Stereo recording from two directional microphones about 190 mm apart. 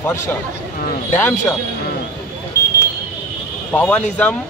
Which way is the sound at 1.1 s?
10° left (ahead or behind).